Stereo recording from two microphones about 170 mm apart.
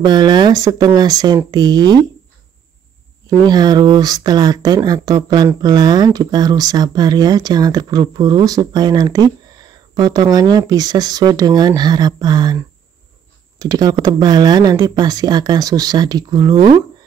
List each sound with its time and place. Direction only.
0.0 s speech: 25° right (ahead or behind)
3.3 s speech: 25° right (ahead or behind)